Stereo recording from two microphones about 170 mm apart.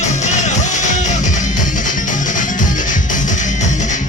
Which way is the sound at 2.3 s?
50° left (ahead or behind).